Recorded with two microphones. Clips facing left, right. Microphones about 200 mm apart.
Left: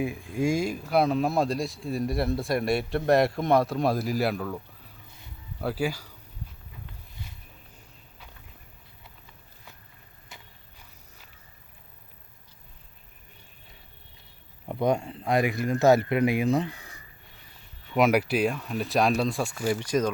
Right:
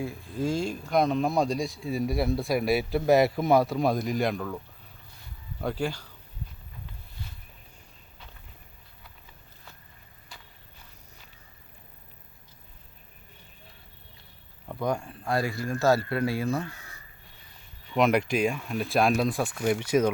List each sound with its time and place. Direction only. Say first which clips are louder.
0.0 s speech: left 3 dB; 15° left (ahead or behind)
14.7 s speech: left 4 dB; 20° left (ahead or behind)
17.9 s speech: left 1 dB; 5° left (ahead or behind)